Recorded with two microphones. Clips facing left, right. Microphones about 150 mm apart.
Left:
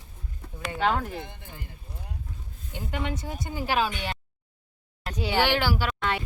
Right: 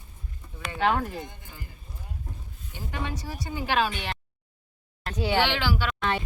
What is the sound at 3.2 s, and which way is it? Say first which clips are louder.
Speech: left 1 dB; 20° left (ahead or behind).